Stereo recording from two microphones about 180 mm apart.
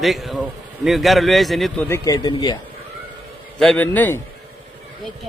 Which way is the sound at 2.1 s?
25° left (ahead or behind).